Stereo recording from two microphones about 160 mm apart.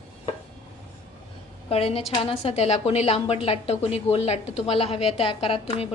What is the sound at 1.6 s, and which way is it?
A woman's voice, 40° left (ahead or behind).